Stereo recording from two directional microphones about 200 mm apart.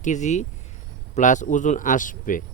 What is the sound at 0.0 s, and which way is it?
Speech, 35° left (ahead or behind).